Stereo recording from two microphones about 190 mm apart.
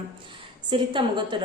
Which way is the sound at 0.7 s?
25° right (ahead or behind).